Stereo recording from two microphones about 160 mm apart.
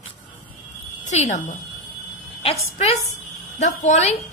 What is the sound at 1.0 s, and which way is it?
A woman's voice, 45° left (ahead or behind).